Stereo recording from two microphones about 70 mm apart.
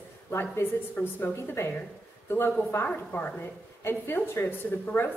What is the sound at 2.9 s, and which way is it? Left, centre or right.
Speech, left.